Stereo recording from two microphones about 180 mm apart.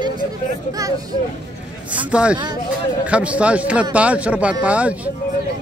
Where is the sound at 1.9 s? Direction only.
5° right (ahead or behind).